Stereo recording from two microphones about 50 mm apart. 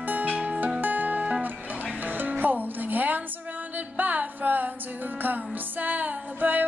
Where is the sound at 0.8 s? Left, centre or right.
Right.